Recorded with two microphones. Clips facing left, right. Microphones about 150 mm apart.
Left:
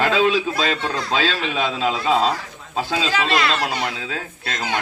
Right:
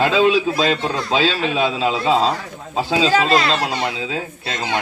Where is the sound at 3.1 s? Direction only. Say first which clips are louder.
Right 4 dB; 40° right (ahead or behind).